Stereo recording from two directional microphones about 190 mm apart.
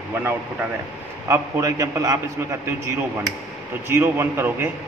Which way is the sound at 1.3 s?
15° right (ahead or behind).